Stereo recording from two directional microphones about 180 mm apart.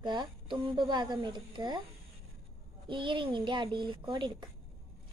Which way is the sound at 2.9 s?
30° right (ahead or behind).